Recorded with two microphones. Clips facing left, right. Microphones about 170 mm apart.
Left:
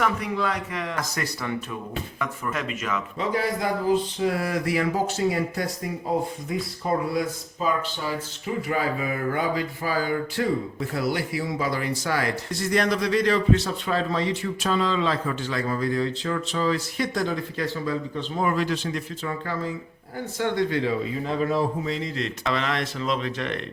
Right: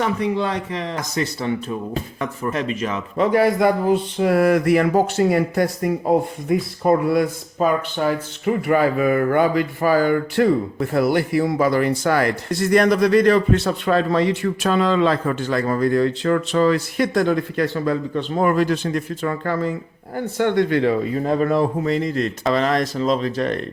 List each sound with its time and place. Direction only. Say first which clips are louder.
0.0 s a man's voice: right 4 dB; 30° right (ahead or behind)
3.2 s speech: right 11 dB; 65° right (ahead or behind); by 23.6 s 40° right (ahead or behind)